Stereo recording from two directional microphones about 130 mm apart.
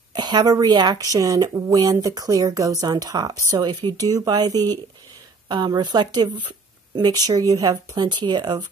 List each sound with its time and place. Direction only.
0.1 s a woman's voice: 35° right (ahead or behind)